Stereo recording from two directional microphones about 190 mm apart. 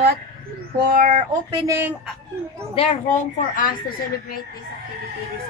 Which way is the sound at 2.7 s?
30° left (ahead or behind).